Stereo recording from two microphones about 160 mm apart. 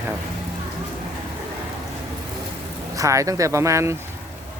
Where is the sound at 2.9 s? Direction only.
20° right (ahead or behind).